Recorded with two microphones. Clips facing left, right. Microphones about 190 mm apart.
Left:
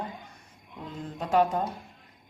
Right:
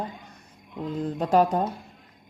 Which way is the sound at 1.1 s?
40° right (ahead or behind).